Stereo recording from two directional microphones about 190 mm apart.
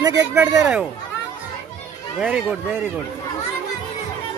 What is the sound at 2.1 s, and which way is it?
Speech, 5° right (ahead or behind).